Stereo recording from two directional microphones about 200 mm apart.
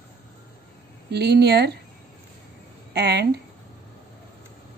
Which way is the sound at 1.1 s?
55° right (ahead or behind).